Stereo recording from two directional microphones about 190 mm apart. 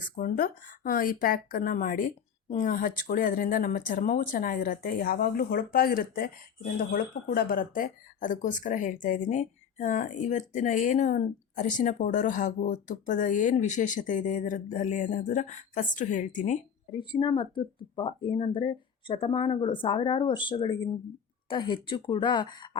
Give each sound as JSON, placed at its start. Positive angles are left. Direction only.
{"t": 0.2, "sound": "speech", "side_deg": 50}
{"t": 17.0, "sound": "speech", "side_deg": 25}